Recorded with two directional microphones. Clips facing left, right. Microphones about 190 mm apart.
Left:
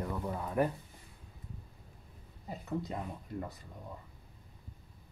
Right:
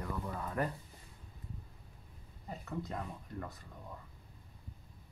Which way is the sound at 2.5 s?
15° left (ahead or behind).